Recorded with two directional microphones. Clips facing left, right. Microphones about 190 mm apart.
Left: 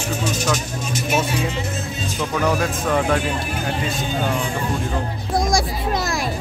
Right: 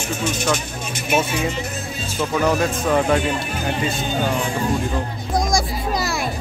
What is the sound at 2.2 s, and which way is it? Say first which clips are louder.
Speech: right 2 dB; centre (ahead or behind).